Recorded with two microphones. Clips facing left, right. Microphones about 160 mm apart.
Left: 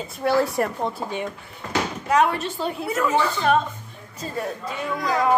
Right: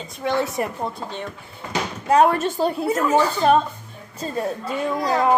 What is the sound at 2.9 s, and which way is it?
A woman's voice, 35° right (ahead or behind).